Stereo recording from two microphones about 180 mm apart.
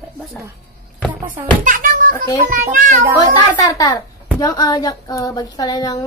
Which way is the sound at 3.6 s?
20° left (ahead or behind).